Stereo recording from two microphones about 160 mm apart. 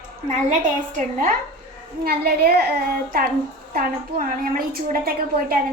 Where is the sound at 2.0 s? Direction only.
70° right (ahead or behind); by 2.7 s 90° right.